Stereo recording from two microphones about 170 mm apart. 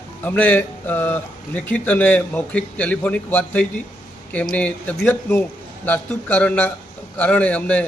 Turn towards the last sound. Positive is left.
turn(degrees=10)  # may be behind; listen again after turning